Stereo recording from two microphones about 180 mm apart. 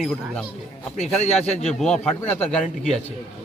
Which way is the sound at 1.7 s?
Centre (ahead or behind).